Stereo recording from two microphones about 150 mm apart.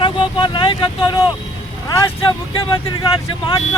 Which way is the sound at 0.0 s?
35° left (ahead or behind).